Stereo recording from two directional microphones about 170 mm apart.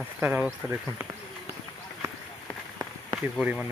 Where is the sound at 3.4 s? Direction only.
10° right (ahead or behind).